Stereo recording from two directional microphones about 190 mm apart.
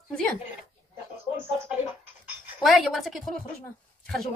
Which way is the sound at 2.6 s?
Centre (ahead or behind).